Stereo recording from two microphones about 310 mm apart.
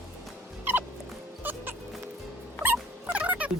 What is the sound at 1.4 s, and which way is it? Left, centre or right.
Music, centre.